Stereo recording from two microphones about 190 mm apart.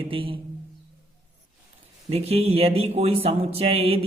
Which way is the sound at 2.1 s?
35° right (ahead or behind).